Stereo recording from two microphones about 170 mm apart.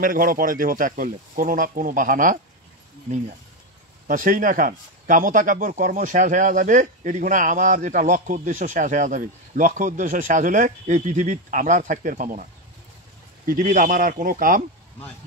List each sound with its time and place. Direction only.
0.0 s speech: 55° right (ahead or behind)
4.1 s speech: 50° right (ahead or behind)
13.5 s speech: 50° right (ahead or behind)